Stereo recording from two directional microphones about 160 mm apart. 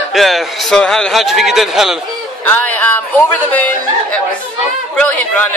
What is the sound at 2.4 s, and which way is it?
Speech, 10° left (ahead or behind).